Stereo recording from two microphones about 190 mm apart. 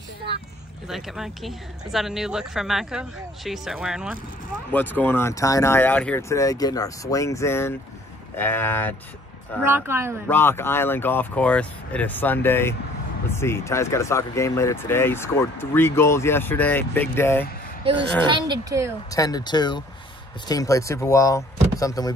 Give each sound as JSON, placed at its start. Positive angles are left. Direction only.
{"t": 0.8, "sound": "speech", "side_deg": 0}
{"t": 4.7, "sound": "speech", "side_deg": 10}
{"t": 9.6, "sound": "speech", "side_deg": -10}
{"t": 10.2, "sound": "speech", "side_deg": 10}
{"t": 18.2, "sound": "speech", "side_deg": -25}
{"t": 19.0, "sound": "speech", "side_deg": 20}